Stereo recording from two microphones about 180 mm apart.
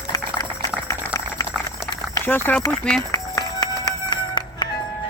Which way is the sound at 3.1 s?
20° left (ahead or behind).